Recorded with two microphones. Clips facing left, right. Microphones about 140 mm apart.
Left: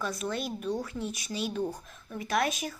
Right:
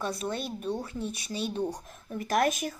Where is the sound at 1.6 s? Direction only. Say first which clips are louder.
Right 2 dB; 40° right (ahead or behind).